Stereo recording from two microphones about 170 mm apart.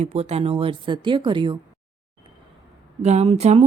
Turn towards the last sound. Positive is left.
turn(degrees=-40)  # may be behind; listen again after turning